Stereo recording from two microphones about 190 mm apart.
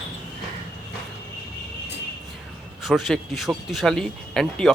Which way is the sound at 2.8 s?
Centre (ahead or behind).